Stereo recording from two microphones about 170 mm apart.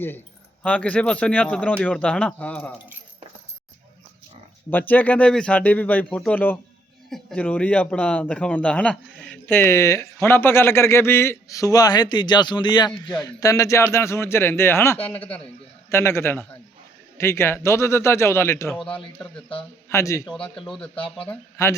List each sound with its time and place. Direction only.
0.6 s speech: 5° left (ahead or behind)
4.7 s speech: 10° left (ahead or behind)
18.8 s a man's voice: 5° left (ahead or behind)
19.9 s speech: 15° left (ahead or behind)
20.7 s a man's voice: 5° left (ahead or behind)